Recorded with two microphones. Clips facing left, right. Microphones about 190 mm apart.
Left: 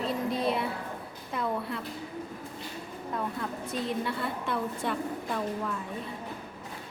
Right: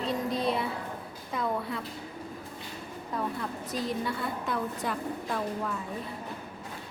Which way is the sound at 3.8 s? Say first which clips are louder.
Even; centre (ahead or behind).